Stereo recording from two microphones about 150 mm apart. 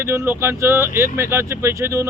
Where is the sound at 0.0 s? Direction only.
15° right (ahead or behind).